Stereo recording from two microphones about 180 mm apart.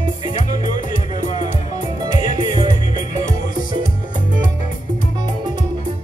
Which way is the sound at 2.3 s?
25° right (ahead or behind).